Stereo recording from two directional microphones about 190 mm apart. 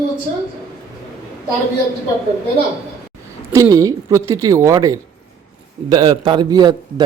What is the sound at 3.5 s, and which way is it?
A woman's voice, 15° right (ahead or behind).